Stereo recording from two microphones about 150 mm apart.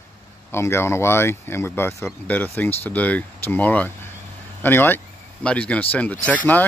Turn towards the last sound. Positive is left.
turn(degrees=10)  # may be behind; listen again after turning